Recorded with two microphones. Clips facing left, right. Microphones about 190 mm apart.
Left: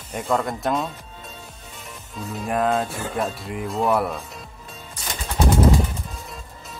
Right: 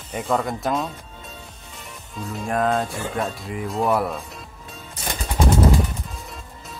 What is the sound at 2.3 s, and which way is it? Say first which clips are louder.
Speech: even; centre (ahead or behind).